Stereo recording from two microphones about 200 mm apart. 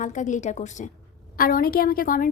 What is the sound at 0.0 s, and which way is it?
A woman's voice, 40° left (ahead or behind).